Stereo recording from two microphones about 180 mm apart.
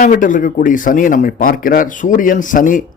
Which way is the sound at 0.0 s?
45° left (ahead or behind).